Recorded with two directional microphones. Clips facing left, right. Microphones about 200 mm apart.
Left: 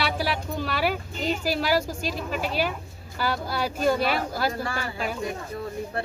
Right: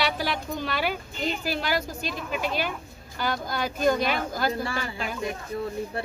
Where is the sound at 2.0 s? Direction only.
35° left (ahead or behind).